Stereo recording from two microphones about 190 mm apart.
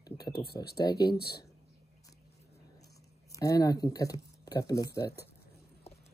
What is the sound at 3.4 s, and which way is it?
Speech, 20° left (ahead or behind).